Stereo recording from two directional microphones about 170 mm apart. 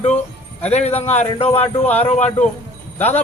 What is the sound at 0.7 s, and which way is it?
Speech, 40° left (ahead or behind).